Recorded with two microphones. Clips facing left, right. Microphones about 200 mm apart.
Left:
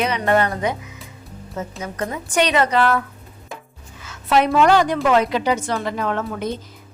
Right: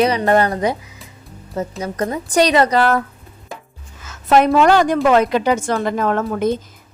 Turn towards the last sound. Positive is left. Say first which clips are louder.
# right 6 dB
turn(degrees=-45)  # may be behind; listen again after turning